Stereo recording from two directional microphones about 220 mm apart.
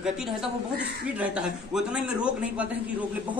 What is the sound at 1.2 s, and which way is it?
A man's voice, 5° right (ahead or behind).